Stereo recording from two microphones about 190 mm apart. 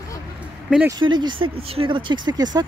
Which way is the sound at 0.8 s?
20° right (ahead or behind).